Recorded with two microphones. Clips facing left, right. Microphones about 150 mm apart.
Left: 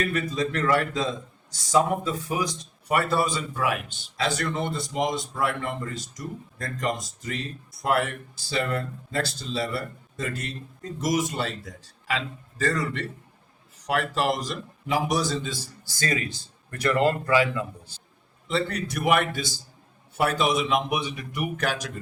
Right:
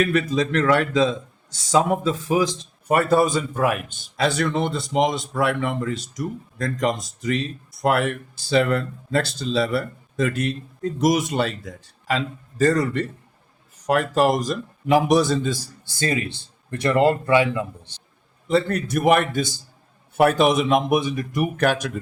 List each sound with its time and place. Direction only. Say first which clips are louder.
0.0 s a man's voice: right 6 dB; 90° right
2.8 s a man's voice: right 6 dB; 45° right (ahead or behind); by 11.7 s 65° right (ahead or behind)
12.0 s a man's voice: right 5 dB; 40° right (ahead or behind)
15.9 s speech: right 4 dB; 25° right (ahead or behind)
18.4 s a man's voice: right 6 dB; 45° right (ahead or behind)